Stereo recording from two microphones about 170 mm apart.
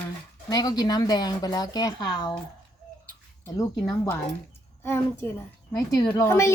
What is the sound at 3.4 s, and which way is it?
Speech, 20° left (ahead or behind).